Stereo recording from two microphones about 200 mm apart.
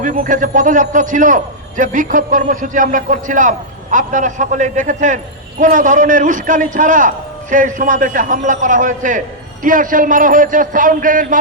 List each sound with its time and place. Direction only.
0.0 s a man's voice: 40° right (ahead or behind)